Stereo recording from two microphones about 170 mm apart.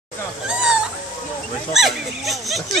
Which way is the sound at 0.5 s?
5° right (ahead or behind).